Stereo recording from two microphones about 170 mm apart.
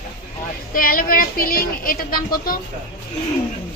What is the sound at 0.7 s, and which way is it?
Speech, 55° left (ahead or behind).